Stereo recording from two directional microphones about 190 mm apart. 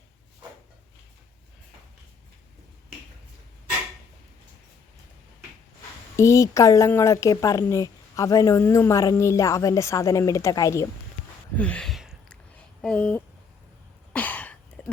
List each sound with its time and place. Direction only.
6.1 s speech: 15° left (ahead or behind)
11.5 s a sound: 5° left (ahead or behind)
14.1 s throat clearing: 5° left (ahead or behind)